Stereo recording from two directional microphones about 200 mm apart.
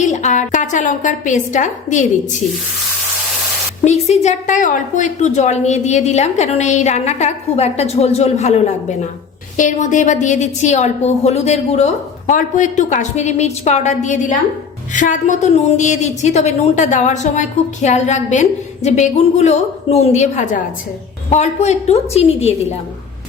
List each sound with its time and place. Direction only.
0.0 s a woman's voice: 35° left (ahead or behind)
3.8 s a woman's voice: 35° left (ahead or behind)